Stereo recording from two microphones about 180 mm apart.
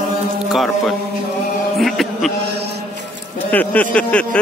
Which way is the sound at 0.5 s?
Centre (ahead or behind).